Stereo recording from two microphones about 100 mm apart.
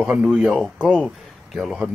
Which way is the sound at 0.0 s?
5° right (ahead or behind).